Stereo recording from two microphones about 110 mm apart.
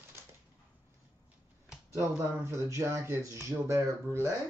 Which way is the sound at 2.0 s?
25° right (ahead or behind).